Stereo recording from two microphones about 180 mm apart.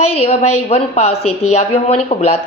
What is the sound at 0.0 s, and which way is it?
A woman's voice, 35° left (ahead or behind).